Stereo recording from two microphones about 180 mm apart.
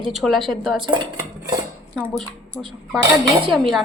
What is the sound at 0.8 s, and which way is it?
Cutlery, 25° right (ahead or behind).